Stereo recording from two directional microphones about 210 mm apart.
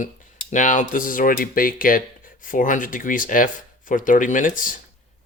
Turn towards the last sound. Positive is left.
turn(degrees=40)  # may be behind; listen again after turning